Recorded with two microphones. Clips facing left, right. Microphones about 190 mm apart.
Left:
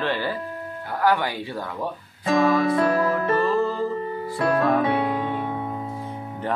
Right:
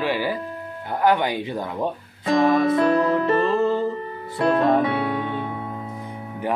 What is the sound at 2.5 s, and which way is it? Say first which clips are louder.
Music: right 2 dB; 20° right (ahead or behind).